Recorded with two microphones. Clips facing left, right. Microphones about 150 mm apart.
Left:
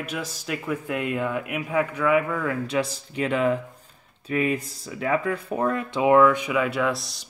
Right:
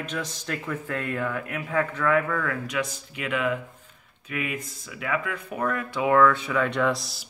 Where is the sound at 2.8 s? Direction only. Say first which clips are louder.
Left 5 dB; 35° left (ahead or behind).